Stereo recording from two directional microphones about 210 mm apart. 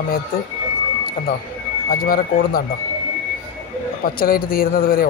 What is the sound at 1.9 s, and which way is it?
Speech, 45° left (ahead or behind).